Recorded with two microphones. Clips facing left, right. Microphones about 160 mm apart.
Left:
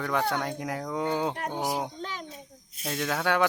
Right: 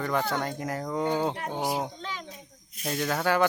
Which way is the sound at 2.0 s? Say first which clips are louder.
Left 1 dB; 45° left (ahead or behind).